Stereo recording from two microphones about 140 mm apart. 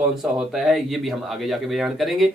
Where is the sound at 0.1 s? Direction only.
Centre (ahead or behind).